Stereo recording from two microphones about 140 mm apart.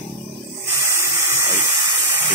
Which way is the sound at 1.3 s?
20° right (ahead or behind).